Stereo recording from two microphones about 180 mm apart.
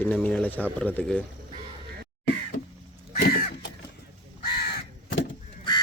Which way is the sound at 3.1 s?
55° left (ahead or behind).